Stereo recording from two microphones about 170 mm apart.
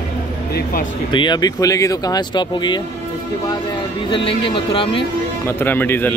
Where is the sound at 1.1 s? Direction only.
25° left (ahead or behind).